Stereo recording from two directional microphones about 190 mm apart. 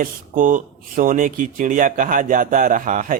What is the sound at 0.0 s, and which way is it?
Speech, 45° right (ahead or behind).